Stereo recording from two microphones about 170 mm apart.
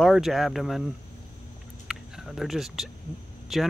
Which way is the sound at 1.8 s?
5° right (ahead or behind).